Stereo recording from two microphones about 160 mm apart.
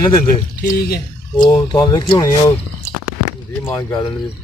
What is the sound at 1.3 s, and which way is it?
Speech, 30° left (ahead or behind).